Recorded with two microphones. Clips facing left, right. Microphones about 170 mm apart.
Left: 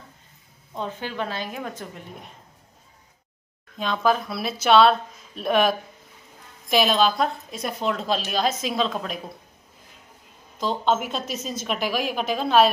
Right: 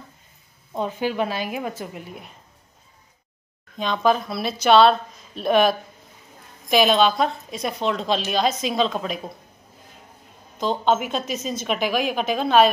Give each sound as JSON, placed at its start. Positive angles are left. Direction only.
{"t": 0.7, "sound": "a woman's voice", "side_deg": -10}
{"t": 3.7, "sound": "a woman's voice", "side_deg": 0}
{"t": 10.6, "sound": "a woman's voice", "side_deg": 0}